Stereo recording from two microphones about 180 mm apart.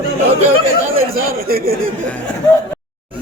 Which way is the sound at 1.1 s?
55° right (ahead or behind).